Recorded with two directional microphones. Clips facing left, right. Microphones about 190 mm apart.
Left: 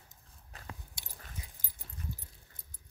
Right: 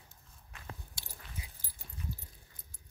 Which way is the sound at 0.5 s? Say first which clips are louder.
Left 2 dB; 35° left (ahead or behind).